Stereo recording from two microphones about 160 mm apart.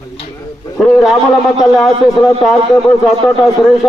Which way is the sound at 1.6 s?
Centre (ahead or behind).